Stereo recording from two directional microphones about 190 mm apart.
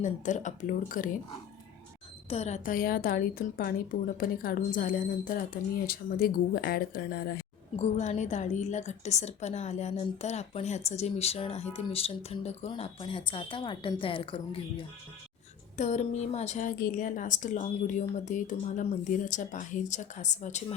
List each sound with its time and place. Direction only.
0.0 s speech: 40° left (ahead or behind)
2.3 s speech: 35° left (ahead or behind); by 7.4 s 50° left (ahead or behind)
7.8 s a woman's voice: 35° left (ahead or behind)
15.8 s a woman's voice: 40° left (ahead or behind)